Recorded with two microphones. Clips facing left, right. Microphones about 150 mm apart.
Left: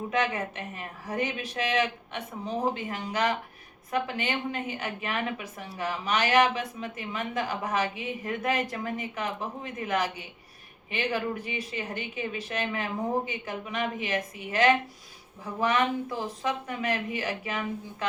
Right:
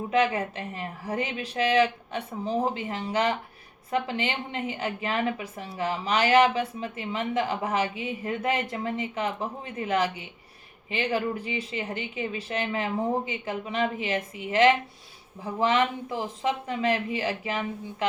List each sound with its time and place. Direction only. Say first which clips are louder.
0.1 s a woman's voice: right 5 dB; 30° right (ahead or behind)